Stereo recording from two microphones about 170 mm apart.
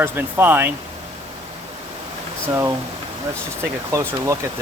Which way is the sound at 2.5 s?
20° right (ahead or behind).